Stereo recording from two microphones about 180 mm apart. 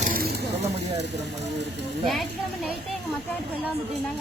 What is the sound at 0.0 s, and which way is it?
Vehicle, 50° right (ahead or behind).